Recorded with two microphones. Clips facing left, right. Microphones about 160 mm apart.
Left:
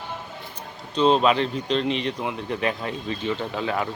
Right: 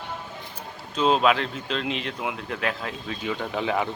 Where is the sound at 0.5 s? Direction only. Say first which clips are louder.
Left 4 dB; 5° right (ahead or behind).